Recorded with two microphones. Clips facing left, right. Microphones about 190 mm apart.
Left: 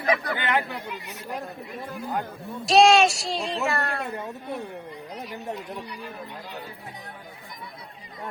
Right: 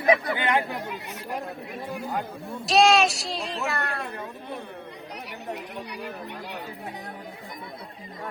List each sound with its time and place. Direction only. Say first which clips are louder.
0.0 s speech: right 3 dB; 20° right (ahead or behind)
2.6 s a child's voice: left 2 dB; centre (ahead or behind)